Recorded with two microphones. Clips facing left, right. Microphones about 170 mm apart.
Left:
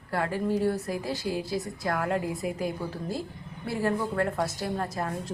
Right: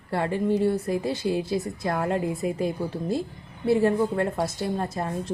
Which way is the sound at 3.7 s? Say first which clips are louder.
Right 7 dB; 25° right (ahead or behind).